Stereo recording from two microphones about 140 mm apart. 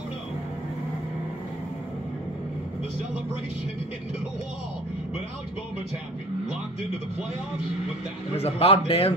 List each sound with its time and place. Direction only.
8.4 s a man's voice: 45° left (ahead or behind)